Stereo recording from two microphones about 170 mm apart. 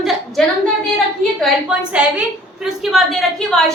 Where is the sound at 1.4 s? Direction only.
5° right (ahead or behind).